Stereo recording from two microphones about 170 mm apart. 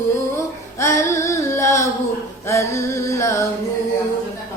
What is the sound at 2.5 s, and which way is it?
Singing, 15° left (ahead or behind).